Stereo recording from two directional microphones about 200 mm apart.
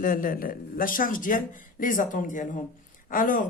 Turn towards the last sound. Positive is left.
turn(degrees=40)  # may be behind; listen again after turning